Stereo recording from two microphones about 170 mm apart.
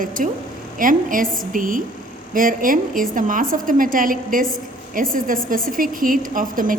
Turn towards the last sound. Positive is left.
turn(degrees=-55)  # may be behind; listen again after turning